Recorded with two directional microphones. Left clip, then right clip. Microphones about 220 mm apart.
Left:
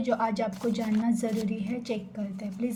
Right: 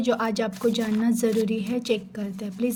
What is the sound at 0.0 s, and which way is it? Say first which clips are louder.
A woman's voice: right 3 dB; 35° right (ahead or behind).